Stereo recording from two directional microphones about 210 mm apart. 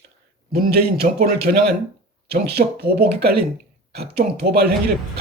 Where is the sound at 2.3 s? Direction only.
50° right (ahead or behind).